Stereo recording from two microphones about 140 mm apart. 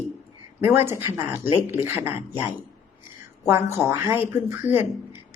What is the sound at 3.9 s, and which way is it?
Speech, 20° right (ahead or behind).